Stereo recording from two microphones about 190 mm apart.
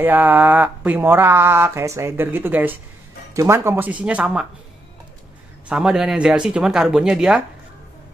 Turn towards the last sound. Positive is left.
turn(degrees=-5)  # may be behind; listen again after turning